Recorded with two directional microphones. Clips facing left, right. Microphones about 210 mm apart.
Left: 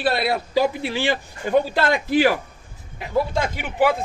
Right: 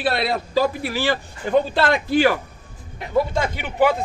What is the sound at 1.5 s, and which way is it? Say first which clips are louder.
Speech: right 1 dB; 10° left (ahead or behind).